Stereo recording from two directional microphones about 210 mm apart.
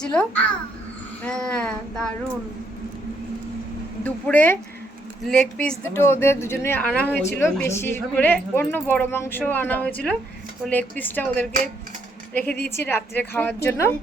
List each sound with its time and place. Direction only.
0.0 s a child's voice: 5° left (ahead or behind)
4.0 s a woman's voice: 10° left (ahead or behind)